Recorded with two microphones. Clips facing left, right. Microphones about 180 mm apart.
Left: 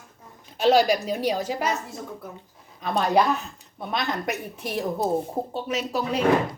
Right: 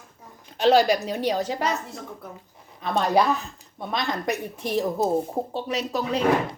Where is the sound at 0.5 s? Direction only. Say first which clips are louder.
Right 1 dB; 10° left (ahead or behind).